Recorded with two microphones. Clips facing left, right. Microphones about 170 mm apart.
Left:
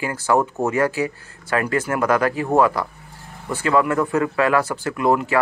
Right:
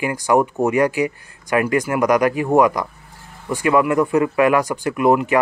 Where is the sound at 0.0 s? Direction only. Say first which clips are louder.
Right 3 dB; 15° right (ahead or behind).